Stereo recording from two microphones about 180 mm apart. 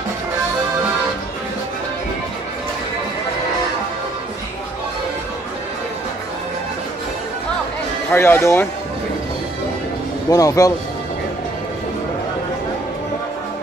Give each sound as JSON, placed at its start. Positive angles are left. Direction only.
{"t": 8.1, "sound": "speech", "side_deg": 15}
{"t": 10.3, "sound": "speech", "side_deg": 20}